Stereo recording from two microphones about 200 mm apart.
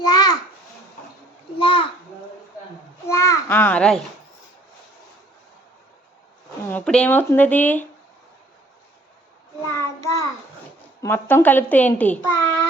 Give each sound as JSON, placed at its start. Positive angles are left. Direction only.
{"t": 0.0, "sound": "a sound", "side_deg": 20}
{"t": 1.6, "sound": "a sound", "side_deg": 25}
{"t": 3.1, "sound": "babbling", "side_deg": 15}
{"t": 6.7, "sound": "speech", "side_deg": 5}
{"t": 9.7, "sound": "child singing", "side_deg": 15}
{"t": 11.0, "sound": "a child's voice", "side_deg": 10}